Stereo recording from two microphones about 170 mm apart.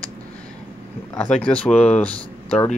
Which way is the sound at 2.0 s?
10° left (ahead or behind).